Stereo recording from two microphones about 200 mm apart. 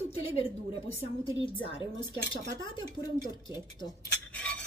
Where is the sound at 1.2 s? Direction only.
25° left (ahead or behind).